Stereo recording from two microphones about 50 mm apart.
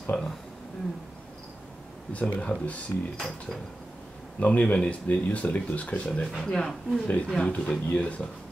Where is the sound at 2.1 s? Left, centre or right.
Left.